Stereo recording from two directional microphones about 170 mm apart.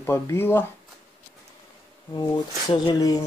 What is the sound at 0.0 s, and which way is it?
Speech, 15° left (ahead or behind).